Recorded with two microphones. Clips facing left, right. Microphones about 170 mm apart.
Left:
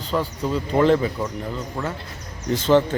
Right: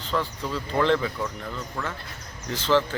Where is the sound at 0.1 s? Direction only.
15° left (ahead or behind).